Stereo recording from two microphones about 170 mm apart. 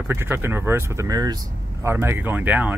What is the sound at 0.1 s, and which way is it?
Speech, 15° right (ahead or behind).